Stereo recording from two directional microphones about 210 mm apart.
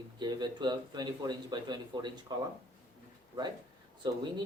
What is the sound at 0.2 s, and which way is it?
Speech, 20° right (ahead or behind).